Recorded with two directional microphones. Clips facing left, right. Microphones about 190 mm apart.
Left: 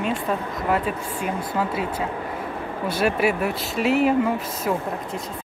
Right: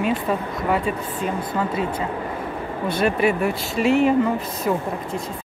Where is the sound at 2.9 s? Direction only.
5° left (ahead or behind).